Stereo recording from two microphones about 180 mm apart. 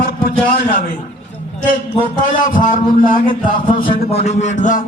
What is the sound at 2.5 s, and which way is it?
A man's voice, 50° left (ahead or behind).